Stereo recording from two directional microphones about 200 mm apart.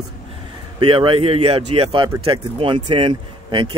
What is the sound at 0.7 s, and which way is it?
Speech, 25° right (ahead or behind).